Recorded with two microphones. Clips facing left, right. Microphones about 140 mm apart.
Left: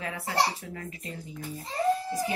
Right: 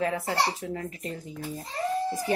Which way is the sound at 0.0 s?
40° right (ahead or behind).